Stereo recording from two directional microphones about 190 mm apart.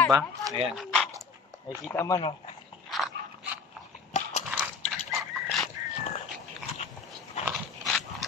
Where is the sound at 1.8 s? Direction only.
15° left (ahead or behind).